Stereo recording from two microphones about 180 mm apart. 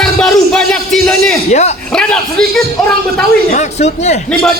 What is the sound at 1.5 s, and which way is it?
Speech, 40° left (ahead or behind).